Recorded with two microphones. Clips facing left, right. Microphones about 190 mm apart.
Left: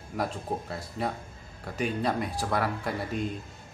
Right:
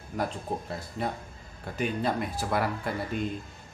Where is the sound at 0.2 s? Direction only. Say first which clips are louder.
Even; centre (ahead or behind).